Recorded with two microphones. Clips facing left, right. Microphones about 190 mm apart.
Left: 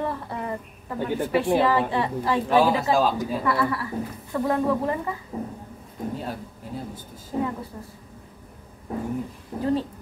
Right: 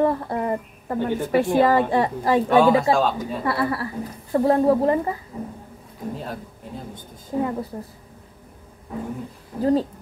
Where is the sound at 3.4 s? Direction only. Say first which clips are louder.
Right 3 dB; 35° right (ahead or behind).